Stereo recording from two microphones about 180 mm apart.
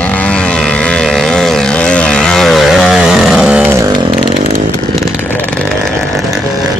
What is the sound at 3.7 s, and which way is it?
Chainsaw, 20° right (ahead or behind).